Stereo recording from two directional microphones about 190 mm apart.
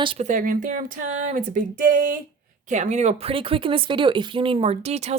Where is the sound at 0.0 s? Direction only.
30° right (ahead or behind).